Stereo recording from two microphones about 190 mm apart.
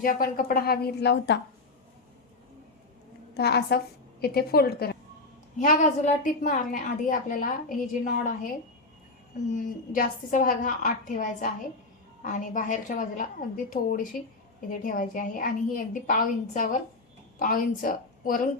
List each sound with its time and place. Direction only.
0.0 s a woman's voice: 50° left (ahead or behind)
3.3 s a woman's voice: 60° left (ahead or behind)
5.5 s a woman's voice: 45° left (ahead or behind)
9.6 s a woman's voice: 45° left (ahead or behind)